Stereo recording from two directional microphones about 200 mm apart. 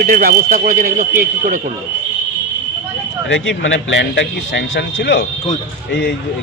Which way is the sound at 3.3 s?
70° left (ahead or behind).